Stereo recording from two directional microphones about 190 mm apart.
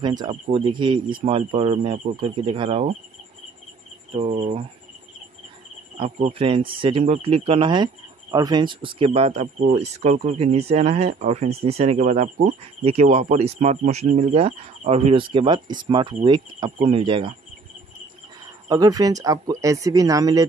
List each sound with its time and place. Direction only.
0.0 s speech: 20° right (ahead or behind)
4.1 s speech: 35° right (ahead or behind)
5.9 s speech: 35° right (ahead or behind)
18.7 s speech: 20° right (ahead or behind)